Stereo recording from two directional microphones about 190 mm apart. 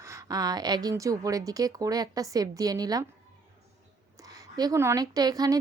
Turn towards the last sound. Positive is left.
turn(degrees=-20)  # may be behind; listen again after turning